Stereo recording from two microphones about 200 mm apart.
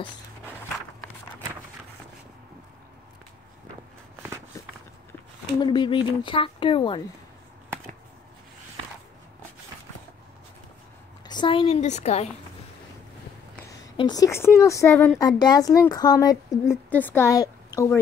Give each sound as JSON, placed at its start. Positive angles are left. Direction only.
{"t": 5.6, "sound": "speech", "side_deg": 20}
{"t": 11.2, "sound": "a woman's voice", "side_deg": 25}
{"t": 13.7, "sound": "a woman's voice", "side_deg": 20}